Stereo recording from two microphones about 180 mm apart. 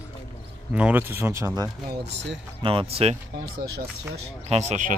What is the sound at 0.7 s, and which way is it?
Speech, 10° right (ahead or behind).